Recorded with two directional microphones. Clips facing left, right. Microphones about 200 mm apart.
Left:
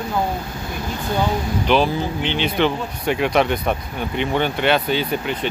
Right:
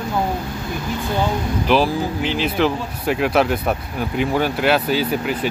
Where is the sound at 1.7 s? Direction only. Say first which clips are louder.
Right 1 dB; 5° right (ahead or behind).